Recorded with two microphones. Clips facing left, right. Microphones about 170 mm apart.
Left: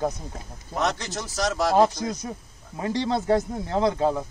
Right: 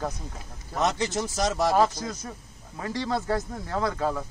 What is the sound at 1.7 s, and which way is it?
A man's voice, 15° left (ahead or behind).